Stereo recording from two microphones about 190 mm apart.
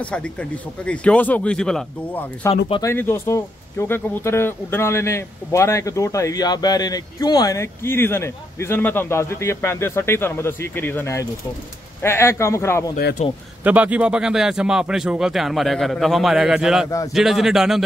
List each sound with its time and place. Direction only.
0.0 s speech: 5° left (ahead or behind)
2.4 s speech: 15° left (ahead or behind)
13.2 s a man's voice: 35° left (ahead or behind)
13.7 s speech: 5° right (ahead or behind)